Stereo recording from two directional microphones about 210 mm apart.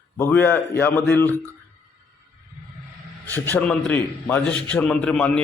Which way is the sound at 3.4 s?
5° left (ahead or behind).